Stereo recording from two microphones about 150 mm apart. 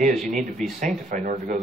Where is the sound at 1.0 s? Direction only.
60° right (ahead or behind).